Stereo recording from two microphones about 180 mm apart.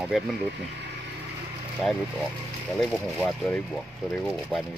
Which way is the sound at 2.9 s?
Centre (ahead or behind).